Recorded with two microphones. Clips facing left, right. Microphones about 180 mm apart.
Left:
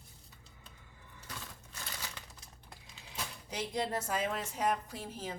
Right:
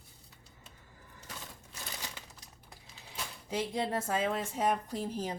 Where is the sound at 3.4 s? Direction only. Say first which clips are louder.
Right 3 dB; 25° right (ahead or behind).